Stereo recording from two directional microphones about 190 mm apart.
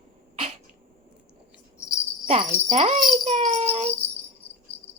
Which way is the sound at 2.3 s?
35° right (ahead or behind).